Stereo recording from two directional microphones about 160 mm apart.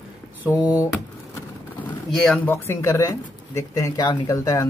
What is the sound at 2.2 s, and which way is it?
Speech, 10° left (ahead or behind).